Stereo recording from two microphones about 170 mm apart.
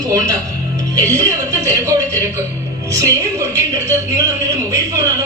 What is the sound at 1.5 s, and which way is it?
A man's voice, 20° right (ahead or behind).